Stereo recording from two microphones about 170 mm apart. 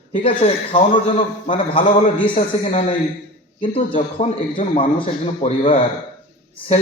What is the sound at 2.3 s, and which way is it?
Speech, 45° left (ahead or behind).